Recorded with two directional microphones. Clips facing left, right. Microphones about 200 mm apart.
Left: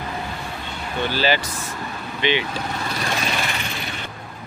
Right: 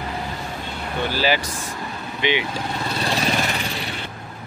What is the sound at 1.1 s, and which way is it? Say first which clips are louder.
Speech: even; 10° right (ahead or behind).